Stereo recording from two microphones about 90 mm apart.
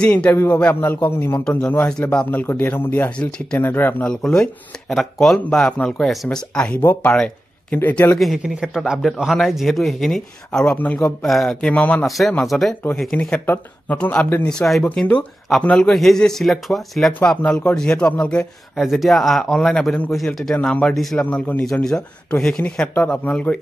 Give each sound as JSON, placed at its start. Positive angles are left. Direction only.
{"t": 0.0, "sound": "speech", "side_deg": 15}
{"t": 3.2, "sound": "speech", "side_deg": 10}
{"t": 3.5, "sound": "speech", "side_deg": 25}
{"t": 4.0, "sound": "speech", "side_deg": 5}
{"t": 8.2, "sound": "speech", "side_deg": 0}
{"t": 10.8, "sound": "speech", "side_deg": 20}
{"t": 11.2, "sound": "speech", "side_deg": 5}
{"t": 13.5, "sound": "speech", "side_deg": 20}
{"t": 17.4, "sound": "speech", "side_deg": 15}
{"t": 21.2, "sound": "speech", "side_deg": 15}